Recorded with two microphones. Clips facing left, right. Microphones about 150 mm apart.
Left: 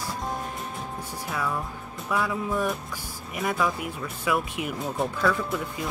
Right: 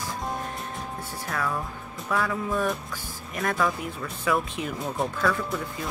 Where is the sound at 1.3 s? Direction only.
5° left (ahead or behind).